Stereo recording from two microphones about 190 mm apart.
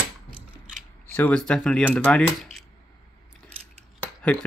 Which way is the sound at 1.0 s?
10° left (ahead or behind).